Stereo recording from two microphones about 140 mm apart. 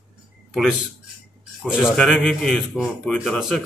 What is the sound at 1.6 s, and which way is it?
Speech, 5° right (ahead or behind).